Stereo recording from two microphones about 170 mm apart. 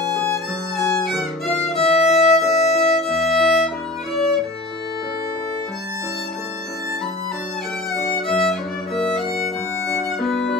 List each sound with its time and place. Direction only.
0.7 s music: centre (ahead or behind)
1.8 s violin: 40° left (ahead or behind)
2.5 s music: 40° left (ahead or behind)
3.0 s violin: centre (ahead or behind)
8.3 s music: centre (ahead or behind)
10.2 s music: centre (ahead or behind)